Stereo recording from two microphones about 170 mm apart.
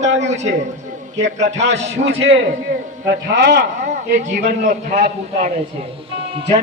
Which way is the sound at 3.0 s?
75° right (ahead or behind).